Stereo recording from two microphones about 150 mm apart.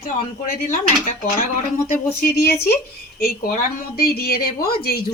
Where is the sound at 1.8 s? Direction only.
80° left.